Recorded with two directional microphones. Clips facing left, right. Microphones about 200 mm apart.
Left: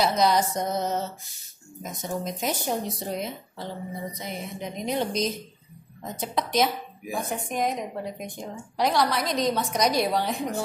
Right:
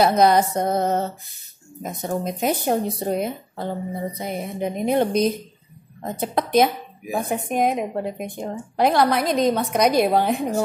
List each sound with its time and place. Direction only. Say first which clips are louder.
0.0 s speech: right 6 dB; 55° right (ahead or behind)